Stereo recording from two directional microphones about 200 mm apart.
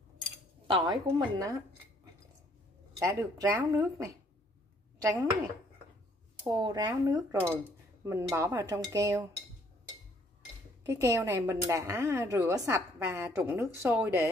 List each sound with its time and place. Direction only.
0.7 s speech: 25° right (ahead or behind)
3.0 s a woman's voice: 15° right (ahead or behind)
6.5 s a woman's voice: 20° right (ahead or behind)
10.8 s a woman's voice: 15° right (ahead or behind)